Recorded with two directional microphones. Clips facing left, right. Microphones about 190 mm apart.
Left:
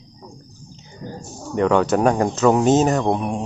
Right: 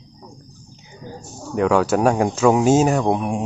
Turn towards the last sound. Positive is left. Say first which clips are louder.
# right 1 dB
turn(degrees=0)  # may be behind; listen again after turning